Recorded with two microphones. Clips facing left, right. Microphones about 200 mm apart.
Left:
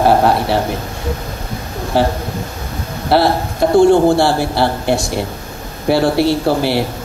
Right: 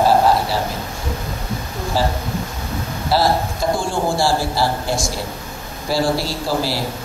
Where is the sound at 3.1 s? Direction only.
60° left (ahead or behind).